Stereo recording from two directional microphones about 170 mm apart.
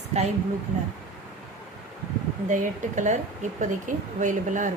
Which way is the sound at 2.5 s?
45° right (ahead or behind).